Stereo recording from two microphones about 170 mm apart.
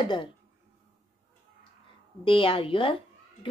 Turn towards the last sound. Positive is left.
turn(degrees=30)  # may be behind; listen again after turning